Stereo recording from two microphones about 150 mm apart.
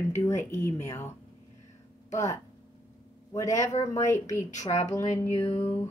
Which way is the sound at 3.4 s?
50° left (ahead or behind).